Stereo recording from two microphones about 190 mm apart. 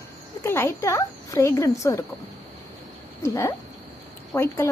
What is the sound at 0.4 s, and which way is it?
Speech, 15° left (ahead or behind).